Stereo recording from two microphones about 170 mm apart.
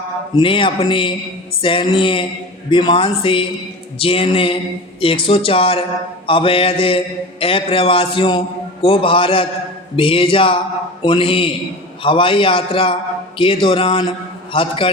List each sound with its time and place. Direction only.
0.3 s mantra: 30° left (ahead or behind)
2.6 s a man's voice: 30° left (ahead or behind)
3.9 s mantra: 30° left (ahead or behind)